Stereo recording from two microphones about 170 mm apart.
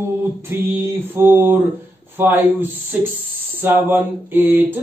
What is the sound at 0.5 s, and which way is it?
A man's voice, 10° right (ahead or behind).